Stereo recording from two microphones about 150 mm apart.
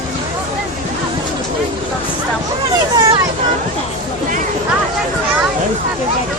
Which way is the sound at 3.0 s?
25° right (ahead or behind).